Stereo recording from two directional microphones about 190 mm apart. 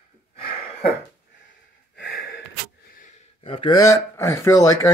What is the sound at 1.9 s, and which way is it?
Gasp, 55° left (ahead or behind).